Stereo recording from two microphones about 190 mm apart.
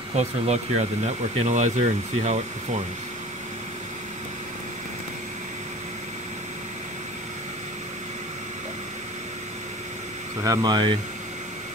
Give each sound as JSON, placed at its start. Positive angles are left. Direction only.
{"t": 0.1, "sound": "speech", "side_deg": -35}
{"t": 10.4, "sound": "speech", "side_deg": -20}